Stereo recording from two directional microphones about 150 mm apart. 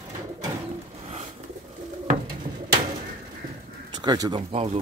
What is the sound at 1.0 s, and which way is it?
Pigeon, 45° right (ahead or behind).